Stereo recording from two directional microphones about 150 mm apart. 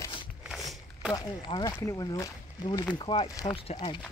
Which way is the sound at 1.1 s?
30° left (ahead or behind).